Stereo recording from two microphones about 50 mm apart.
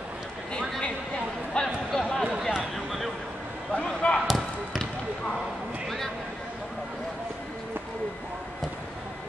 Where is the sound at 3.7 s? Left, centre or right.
Centre.